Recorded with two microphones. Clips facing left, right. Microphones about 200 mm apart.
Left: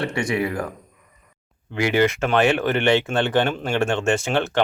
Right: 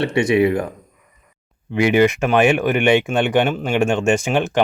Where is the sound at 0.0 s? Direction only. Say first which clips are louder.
Right 7 dB; 20° right (ahead or behind).